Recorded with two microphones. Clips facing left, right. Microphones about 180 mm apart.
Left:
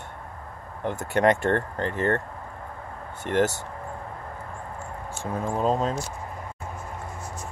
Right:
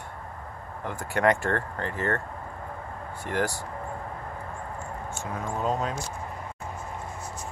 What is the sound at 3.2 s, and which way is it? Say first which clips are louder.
Speech: left 5 dB; 20° left (ahead or behind).